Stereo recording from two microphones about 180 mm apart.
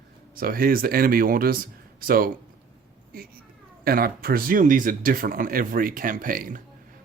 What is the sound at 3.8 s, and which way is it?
Speech, 55° right (ahead or behind).